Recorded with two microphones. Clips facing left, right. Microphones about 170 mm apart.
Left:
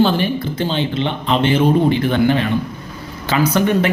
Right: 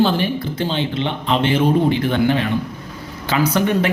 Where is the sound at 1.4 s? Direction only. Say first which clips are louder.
Left 2 dB; 50° left (ahead or behind).